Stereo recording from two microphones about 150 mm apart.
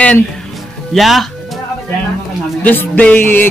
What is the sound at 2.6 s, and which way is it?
Music, 10° left (ahead or behind).